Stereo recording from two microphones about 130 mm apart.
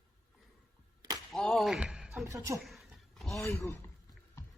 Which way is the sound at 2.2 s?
25° right (ahead or behind).